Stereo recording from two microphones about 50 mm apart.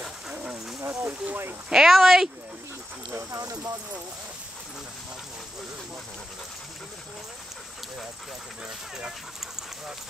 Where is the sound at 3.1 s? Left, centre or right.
Right.